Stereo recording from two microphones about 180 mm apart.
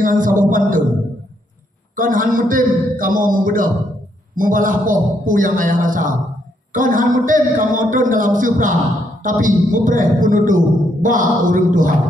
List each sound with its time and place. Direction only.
0.0 s a man's voice: 50° right (ahead or behind)
2.0 s a man's voice: 50° right (ahead or behind)